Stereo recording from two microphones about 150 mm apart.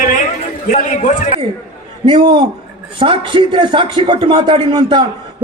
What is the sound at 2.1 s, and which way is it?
Speech, 30° right (ahead or behind).